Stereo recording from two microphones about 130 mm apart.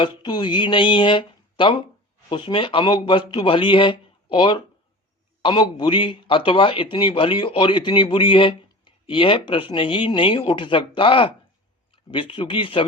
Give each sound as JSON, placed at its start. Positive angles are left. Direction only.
{"t": 0.0, "sound": "speech", "side_deg": 35}